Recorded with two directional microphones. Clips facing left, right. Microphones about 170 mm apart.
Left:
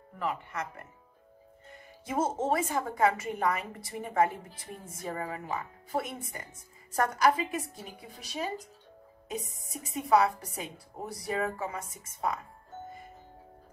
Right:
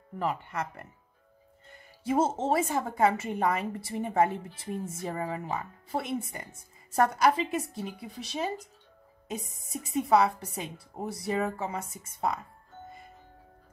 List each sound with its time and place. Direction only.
0.2 s speech: 30° right (ahead or behind)
2.0 s a woman's voice: 30° right (ahead or behind)